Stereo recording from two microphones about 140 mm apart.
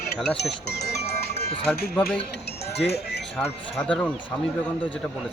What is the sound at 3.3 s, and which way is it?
Speech, 10° left (ahead or behind).